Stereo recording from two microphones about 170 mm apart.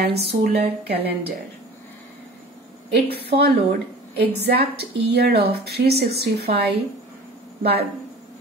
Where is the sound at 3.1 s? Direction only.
75° right (ahead or behind).